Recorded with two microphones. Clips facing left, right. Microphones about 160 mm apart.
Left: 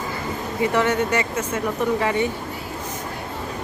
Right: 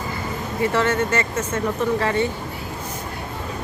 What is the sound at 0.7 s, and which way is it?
Speech, 15° left (ahead or behind).